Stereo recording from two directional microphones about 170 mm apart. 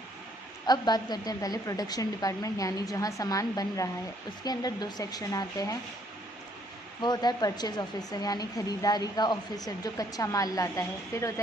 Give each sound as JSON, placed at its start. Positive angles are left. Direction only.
{"t": 0.7, "sound": "a woman's voice", "side_deg": 25}
{"t": 7.0, "sound": "a woman's voice", "side_deg": 25}